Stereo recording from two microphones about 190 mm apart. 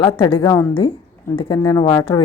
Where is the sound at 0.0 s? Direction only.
25° left (ahead or behind).